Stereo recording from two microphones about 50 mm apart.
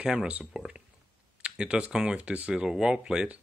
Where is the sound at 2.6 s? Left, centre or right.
Centre.